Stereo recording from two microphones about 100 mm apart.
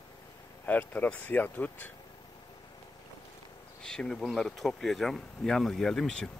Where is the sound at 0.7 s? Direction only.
15° left (ahead or behind).